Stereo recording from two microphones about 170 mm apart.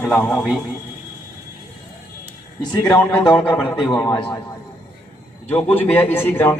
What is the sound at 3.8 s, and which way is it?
Speech, centre (ahead or behind).